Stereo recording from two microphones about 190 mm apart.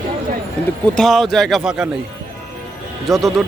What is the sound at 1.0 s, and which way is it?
Speech, centre (ahead or behind).